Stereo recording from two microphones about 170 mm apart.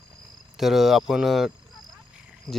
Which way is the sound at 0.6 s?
Centre (ahead or behind).